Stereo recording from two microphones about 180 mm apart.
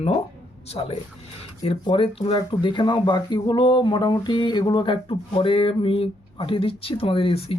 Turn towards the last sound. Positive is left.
turn(degrees=30)  # may be behind; listen again after turning